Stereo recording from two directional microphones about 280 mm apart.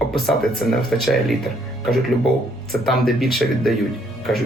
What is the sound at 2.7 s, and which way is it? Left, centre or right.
Speech, centre.